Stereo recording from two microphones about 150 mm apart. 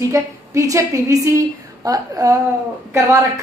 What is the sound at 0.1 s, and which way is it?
A woman's voice, 20° right (ahead or behind).